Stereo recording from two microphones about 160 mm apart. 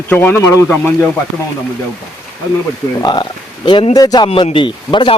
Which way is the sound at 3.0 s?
30° left (ahead or behind).